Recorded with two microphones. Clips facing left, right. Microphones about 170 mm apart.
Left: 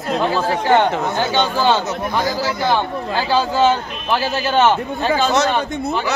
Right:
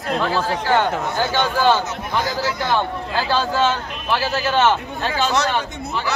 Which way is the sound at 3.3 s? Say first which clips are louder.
Left 4 dB; 15° left (ahead or behind).